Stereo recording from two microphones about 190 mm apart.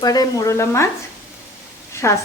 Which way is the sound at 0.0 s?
20° left (ahead or behind).